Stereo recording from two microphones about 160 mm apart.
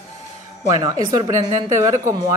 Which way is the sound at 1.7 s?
20° right (ahead or behind).